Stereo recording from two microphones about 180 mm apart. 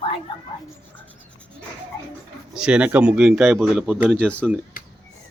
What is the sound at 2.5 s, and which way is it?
Speech, 5° right (ahead or behind).